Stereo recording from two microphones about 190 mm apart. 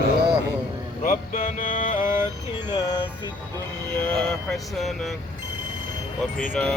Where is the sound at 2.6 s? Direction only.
20° left (ahead or behind).